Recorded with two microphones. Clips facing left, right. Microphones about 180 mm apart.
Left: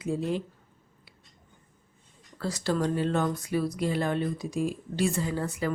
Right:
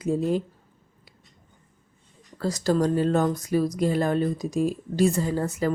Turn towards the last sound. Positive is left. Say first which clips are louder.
# right 5 dB
turn(degrees=-40)  # may be behind; listen again after turning